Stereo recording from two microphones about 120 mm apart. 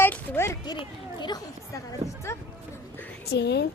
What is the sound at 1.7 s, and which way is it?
Speech, 25° left (ahead or behind).